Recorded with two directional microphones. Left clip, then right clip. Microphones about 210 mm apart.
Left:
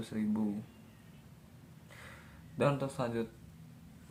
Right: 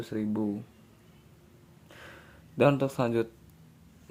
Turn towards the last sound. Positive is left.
turn(degrees=-45)  # may be behind; listen again after turning